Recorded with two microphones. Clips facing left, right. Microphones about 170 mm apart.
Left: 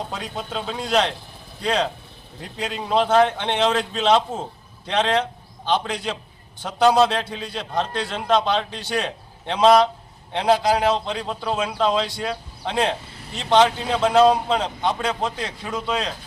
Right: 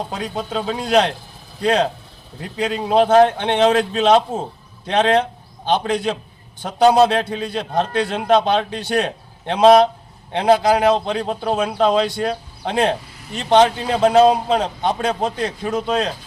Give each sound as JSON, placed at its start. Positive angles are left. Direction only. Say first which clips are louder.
{"t": 0.3, "sound": "a man's voice", "louder": "right 5 dB", "side_deg": -50}